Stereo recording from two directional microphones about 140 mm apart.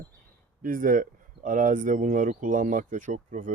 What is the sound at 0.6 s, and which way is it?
Speech, 80° right.